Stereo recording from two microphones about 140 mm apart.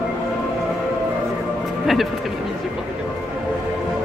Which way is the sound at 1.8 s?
Centre (ahead or behind).